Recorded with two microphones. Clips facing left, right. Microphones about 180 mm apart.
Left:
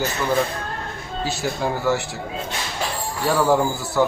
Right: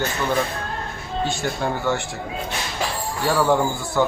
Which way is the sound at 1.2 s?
5° left (ahead or behind).